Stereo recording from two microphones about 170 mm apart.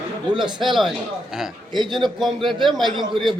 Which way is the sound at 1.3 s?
5° right (ahead or behind).